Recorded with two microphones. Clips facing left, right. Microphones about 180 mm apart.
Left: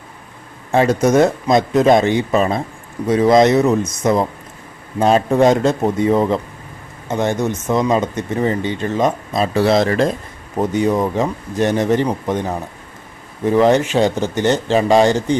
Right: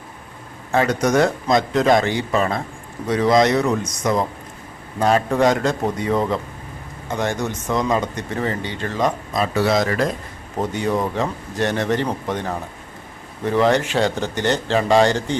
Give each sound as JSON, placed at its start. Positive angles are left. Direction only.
{"t": 0.7, "sound": "speech", "side_deg": 25}
{"t": 10.6, "sound": "speech", "side_deg": 20}